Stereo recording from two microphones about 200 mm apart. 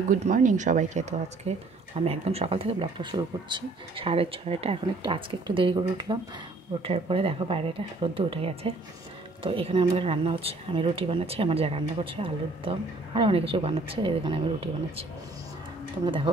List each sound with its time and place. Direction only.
0.1 s speech: 40° right (ahead or behind)